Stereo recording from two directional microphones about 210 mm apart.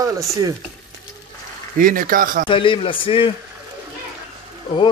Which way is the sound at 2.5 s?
25° left (ahead or behind).